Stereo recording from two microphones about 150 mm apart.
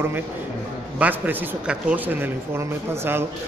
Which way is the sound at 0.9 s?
10° right (ahead or behind).